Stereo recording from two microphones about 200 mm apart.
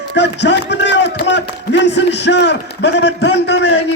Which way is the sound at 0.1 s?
60° left (ahead or behind).